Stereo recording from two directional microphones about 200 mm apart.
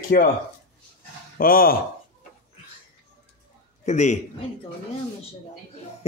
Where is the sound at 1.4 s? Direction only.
45° left (ahead or behind).